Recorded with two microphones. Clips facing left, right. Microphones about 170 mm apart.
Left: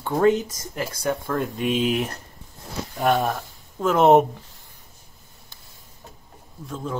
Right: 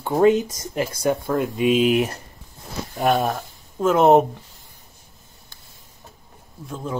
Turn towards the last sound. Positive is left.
turn(degrees=-5)  # may be behind; listen again after turning